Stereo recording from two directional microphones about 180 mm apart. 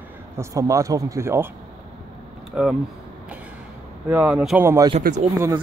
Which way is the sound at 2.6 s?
5° right (ahead or behind).